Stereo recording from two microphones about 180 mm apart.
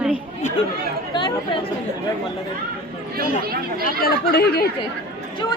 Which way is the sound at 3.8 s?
55° left (ahead or behind).